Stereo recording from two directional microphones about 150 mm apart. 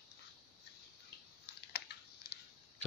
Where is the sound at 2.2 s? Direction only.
90° left.